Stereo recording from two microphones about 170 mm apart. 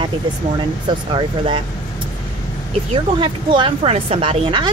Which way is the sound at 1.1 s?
30° right (ahead or behind).